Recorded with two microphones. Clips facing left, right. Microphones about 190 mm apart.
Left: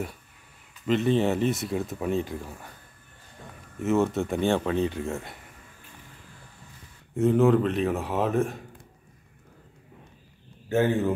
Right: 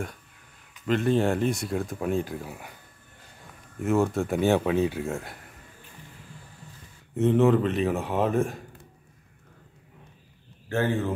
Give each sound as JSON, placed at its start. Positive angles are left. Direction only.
{"t": 0.8, "sound": "speech", "side_deg": 0}
{"t": 3.8, "sound": "speech", "side_deg": 0}
{"t": 7.2, "sound": "speech", "side_deg": 0}
{"t": 10.7, "sound": "speech", "side_deg": 15}